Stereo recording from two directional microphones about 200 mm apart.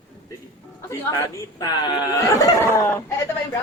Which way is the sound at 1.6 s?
20° left (ahead or behind).